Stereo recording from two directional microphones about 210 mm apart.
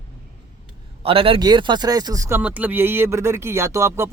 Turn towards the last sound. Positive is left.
turn(degrees=-10)  # may be behind; listen again after turning